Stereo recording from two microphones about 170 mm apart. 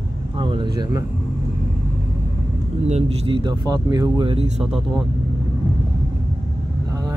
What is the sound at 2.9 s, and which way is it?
Speech, 35° right (ahead or behind).